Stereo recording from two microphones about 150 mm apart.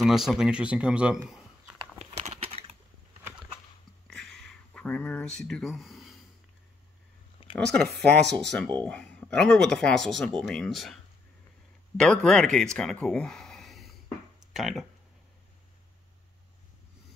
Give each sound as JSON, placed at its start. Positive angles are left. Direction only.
{"t": 0.0, "sound": "speech", "side_deg": 0}
{"t": 2.0, "sound": "a sound", "side_deg": -45}
{"t": 4.2, "sound": "a sound", "side_deg": 5}
{"t": 7.5, "sound": "speech", "side_deg": 5}
{"t": 12.0, "sound": "speech", "side_deg": 5}
{"t": 12.7, "sound": "gasp", "side_deg": 5}
{"t": 14.5, "sound": "speech", "side_deg": 0}